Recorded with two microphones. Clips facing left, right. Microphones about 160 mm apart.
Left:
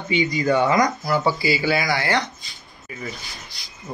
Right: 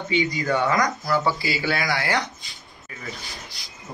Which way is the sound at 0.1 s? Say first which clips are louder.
Left 3 dB; 15° left (ahead or behind).